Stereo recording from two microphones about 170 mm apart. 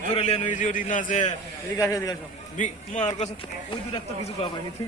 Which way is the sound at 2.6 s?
45° left (ahead or behind).